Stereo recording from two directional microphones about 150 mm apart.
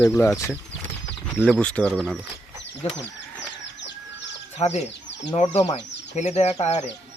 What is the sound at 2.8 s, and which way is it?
Speech, 40° left (ahead or behind).